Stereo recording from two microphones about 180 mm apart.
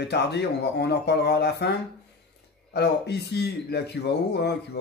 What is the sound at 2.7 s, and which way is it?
Speech, 70° left (ahead or behind).